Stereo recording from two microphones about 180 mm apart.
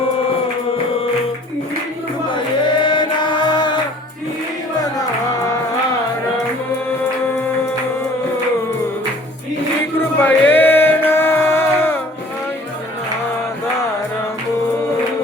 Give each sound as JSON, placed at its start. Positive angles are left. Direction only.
{"t": 2.3, "sound": "chant", "side_deg": 25}
{"t": 4.9, "sound": "music", "side_deg": 20}
{"t": 10.2, "sound": "music", "side_deg": 10}